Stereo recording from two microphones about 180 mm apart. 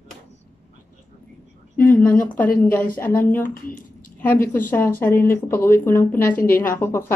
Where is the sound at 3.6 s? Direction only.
50° left (ahead or behind).